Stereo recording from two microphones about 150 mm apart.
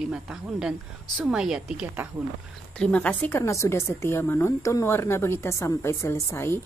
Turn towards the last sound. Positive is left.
turn(degrees=15)  # may be behind; listen again after turning